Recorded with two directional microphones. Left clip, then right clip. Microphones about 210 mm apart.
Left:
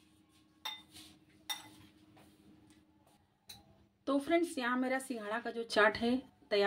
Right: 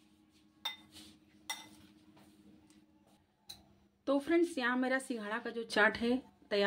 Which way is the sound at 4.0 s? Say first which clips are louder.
Right 1 dB; 5° right (ahead or behind).